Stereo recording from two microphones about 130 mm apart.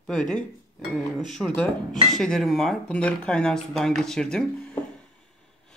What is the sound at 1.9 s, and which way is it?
Speech, 5° left (ahead or behind).